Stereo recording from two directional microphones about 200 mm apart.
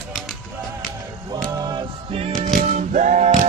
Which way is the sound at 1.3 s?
20° right (ahead or behind).